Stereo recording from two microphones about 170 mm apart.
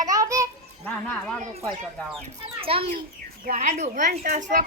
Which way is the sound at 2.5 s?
35° right (ahead or behind).